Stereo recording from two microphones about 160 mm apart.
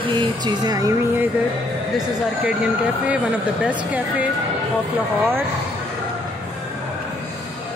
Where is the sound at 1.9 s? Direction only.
5° right (ahead or behind).